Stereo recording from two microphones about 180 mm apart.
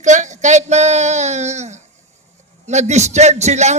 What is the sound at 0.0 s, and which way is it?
A man's voice, 40° right (ahead or behind).